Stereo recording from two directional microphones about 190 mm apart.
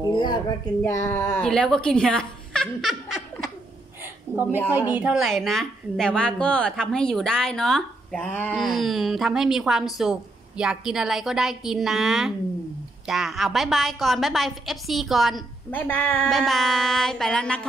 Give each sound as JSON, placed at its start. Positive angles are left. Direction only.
{"t": 0.1, "sound": "a woman's voice", "side_deg": 25}
{"t": 4.3, "sound": "a woman's voice", "side_deg": -15}